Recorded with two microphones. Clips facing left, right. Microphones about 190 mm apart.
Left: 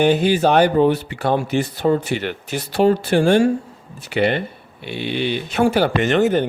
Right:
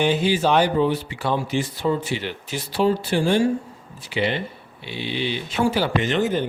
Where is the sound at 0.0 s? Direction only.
55° left (ahead or behind).